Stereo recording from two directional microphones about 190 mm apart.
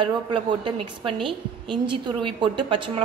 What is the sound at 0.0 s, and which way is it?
A woman's voice, 25° right (ahead or behind).